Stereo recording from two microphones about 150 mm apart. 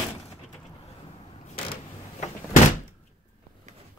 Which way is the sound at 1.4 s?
40° left (ahead or behind).